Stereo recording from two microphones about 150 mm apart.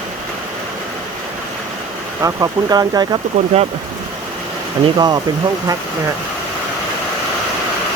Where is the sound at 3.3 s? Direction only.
45° right (ahead or behind).